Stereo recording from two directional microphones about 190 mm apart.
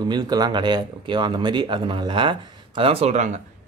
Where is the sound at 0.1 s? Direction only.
20° right (ahead or behind).